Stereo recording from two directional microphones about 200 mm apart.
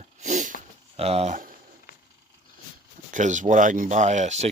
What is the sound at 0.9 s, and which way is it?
Speech, 30° right (ahead or behind).